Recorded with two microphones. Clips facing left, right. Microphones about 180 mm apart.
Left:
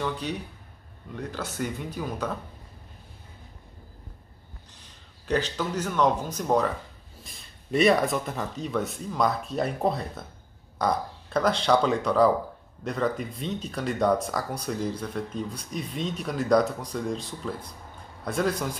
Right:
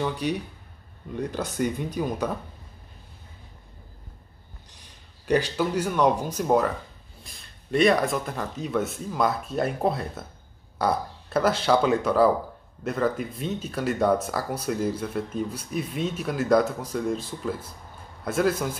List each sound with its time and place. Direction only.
0.0 s speech: 15° right (ahead or behind)
4.7 s speech: 15° right (ahead or behind)